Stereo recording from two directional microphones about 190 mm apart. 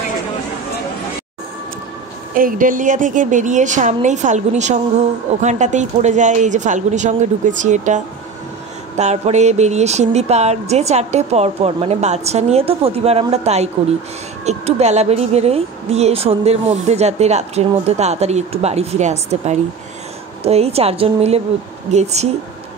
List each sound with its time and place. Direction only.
2.3 s a woman's voice: 45° right (ahead or behind)